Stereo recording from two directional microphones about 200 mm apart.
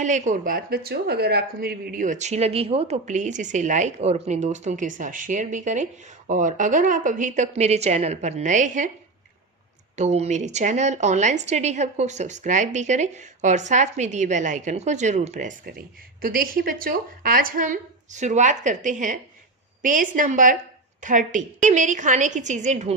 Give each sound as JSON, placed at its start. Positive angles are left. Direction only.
{"t": 0.0, "sound": "speech", "side_deg": -35}
{"t": 9.9, "sound": "speech", "side_deg": -35}